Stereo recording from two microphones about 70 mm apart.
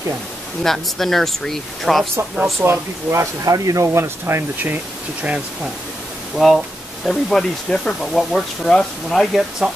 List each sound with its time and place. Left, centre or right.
0.7 s speech: centre
2.6 s speech: right
3.8 s speech: right
5.2 s speech: centre
6.3 s speech: centre
9.6 s speech: centre